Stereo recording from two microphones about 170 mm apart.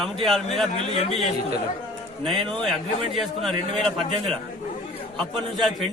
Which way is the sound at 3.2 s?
Centre (ahead or behind).